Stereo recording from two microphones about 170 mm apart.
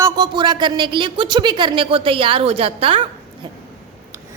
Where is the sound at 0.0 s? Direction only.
25° right (ahead or behind).